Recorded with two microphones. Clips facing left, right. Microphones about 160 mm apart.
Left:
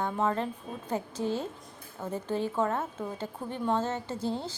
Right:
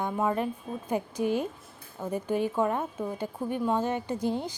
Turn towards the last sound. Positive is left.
turn(degrees=-15)  # may be behind; listen again after turning